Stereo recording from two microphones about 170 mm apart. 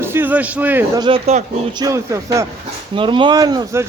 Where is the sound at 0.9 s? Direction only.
25° right (ahead or behind).